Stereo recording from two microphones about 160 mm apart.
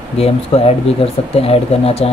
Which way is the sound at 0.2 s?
40° left (ahead or behind).